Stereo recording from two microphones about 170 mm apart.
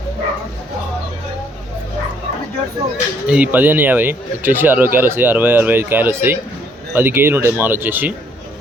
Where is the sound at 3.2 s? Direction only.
5° right (ahead or behind).